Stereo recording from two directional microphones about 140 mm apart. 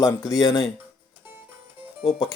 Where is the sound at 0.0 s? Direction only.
20° left (ahead or behind).